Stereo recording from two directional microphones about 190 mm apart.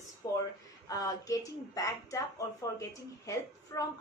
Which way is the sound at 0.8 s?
20° left (ahead or behind).